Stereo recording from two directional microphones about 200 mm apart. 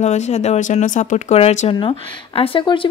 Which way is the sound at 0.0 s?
35° left (ahead or behind).